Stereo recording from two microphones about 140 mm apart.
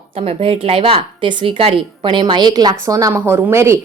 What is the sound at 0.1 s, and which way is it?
A woman's voice, 45° right (ahead or behind).